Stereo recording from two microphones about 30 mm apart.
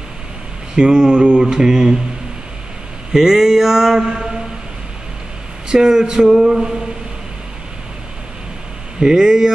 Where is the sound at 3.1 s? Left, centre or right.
Centre.